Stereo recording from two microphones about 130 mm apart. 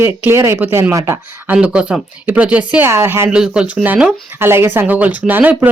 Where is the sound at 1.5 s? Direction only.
5° right (ahead or behind).